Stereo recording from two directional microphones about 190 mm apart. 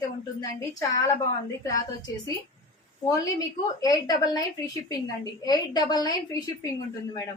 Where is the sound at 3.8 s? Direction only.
20° left (ahead or behind).